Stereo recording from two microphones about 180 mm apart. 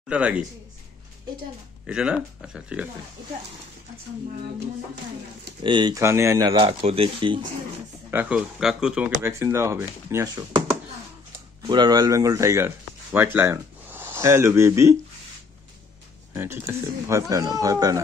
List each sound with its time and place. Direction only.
0.1 s speech: 5° right (ahead or behind)
1.9 s speech: 5° right (ahead or behind)
5.6 s speech: 25° right (ahead or behind)
6.6 s speech: 35° right (ahead or behind)
8.1 s speech: 10° right (ahead or behind)
9.2 s speech: 15° right (ahead or behind)
11.6 s speech: 25° right (ahead or behind)
16.3 s speech: 15° right (ahead or behind)